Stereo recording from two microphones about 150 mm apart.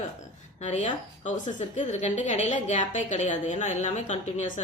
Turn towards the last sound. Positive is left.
turn(degrees=55)  # may be behind; listen again after turning